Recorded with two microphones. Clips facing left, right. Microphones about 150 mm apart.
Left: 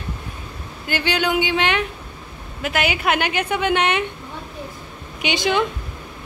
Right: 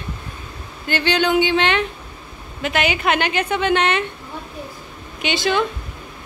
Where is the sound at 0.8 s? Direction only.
10° left (ahead or behind).